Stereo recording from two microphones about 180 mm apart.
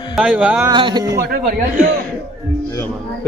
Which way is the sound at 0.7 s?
25° right (ahead or behind).